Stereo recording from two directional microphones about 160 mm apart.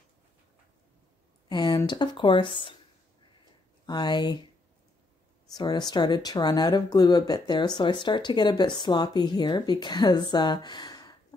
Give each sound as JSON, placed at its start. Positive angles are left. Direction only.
{"t": 1.5, "sound": "speech", "side_deg": 25}
{"t": 3.8, "sound": "speech", "side_deg": 25}
{"t": 5.6, "sound": "speech", "side_deg": 25}